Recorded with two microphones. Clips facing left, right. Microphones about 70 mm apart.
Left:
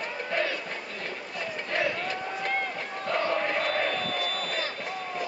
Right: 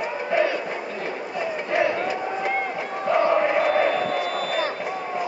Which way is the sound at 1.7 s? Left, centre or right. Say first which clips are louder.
Right 6 dB; centre.